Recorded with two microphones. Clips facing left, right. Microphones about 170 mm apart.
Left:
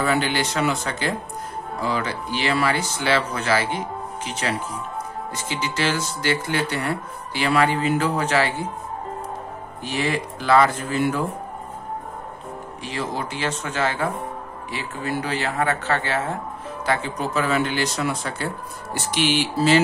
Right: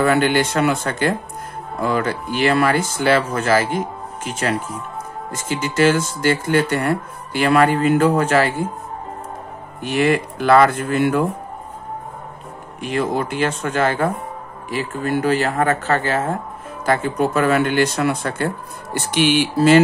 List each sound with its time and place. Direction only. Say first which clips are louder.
0.0 s speech: right 6 dB; 55° right (ahead or behind)
9.8 s speech: right 7 dB; 60° right (ahead or behind)
12.8 s speech: right 8 dB; 55° right (ahead or behind)